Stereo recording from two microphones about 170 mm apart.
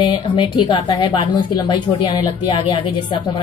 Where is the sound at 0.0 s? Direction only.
25° left (ahead or behind).